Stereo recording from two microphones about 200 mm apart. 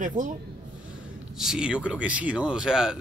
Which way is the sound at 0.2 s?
40° right (ahead or behind).